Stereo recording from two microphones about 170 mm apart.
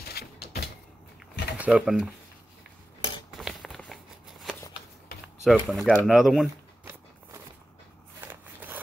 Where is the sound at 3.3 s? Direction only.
Centre (ahead or behind).